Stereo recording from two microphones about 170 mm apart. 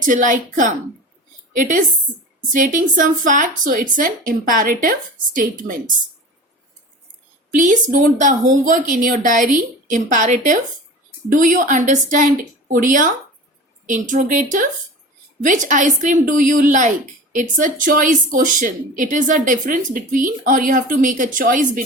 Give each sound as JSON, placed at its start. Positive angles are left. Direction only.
{"t": 0.0, "sound": "speech", "side_deg": -50}
{"t": 7.5, "sound": "speech", "side_deg": -50}